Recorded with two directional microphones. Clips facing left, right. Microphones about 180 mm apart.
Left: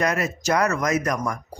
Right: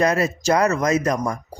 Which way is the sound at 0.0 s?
30° right (ahead or behind).